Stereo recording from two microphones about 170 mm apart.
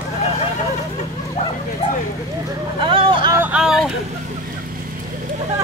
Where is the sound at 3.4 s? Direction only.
5° right (ahead or behind).